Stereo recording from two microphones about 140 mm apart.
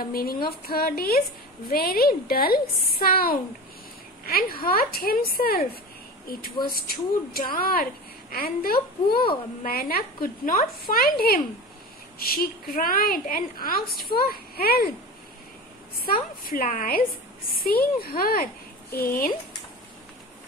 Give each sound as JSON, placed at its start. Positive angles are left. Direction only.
{"t": 0.0, "sound": "a woman's voice", "side_deg": 90}
{"t": 16.1, "sound": "a woman's voice", "side_deg": 90}